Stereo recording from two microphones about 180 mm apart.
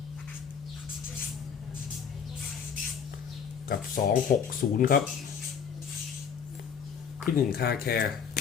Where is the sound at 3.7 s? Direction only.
50° left (ahead or behind).